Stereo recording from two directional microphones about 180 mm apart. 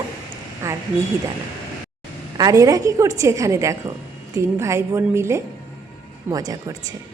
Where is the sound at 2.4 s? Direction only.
20° right (ahead or behind).